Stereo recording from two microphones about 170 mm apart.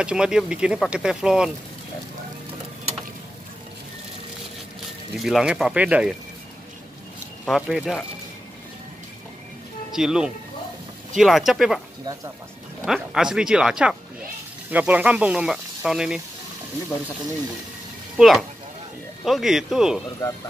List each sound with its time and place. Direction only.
0.0 s speech: 5° right (ahead or behind)
5.1 s speech: centre (ahead or behind)
7.4 s speech: centre (ahead or behind)
9.9 s speech: 5° right (ahead or behind)
12.8 s speech: 5° right (ahead or behind)
18.1 s speech: centre (ahead or behind)
20.2 s speech: 20° left (ahead or behind)